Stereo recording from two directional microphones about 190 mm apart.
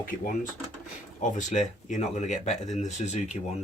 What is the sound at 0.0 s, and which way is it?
Speech, 45° left (ahead or behind).